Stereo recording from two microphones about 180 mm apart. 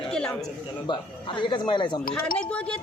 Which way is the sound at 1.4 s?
25° left (ahead or behind).